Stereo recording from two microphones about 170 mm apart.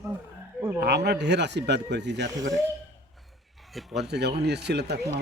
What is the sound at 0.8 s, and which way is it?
Speech, 80° right.